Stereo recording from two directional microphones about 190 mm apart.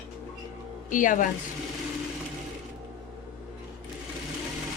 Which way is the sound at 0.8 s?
45° left (ahead or behind).